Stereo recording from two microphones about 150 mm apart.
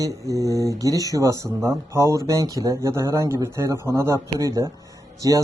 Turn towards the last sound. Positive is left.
turn(degrees=-25)  # may be behind; listen again after turning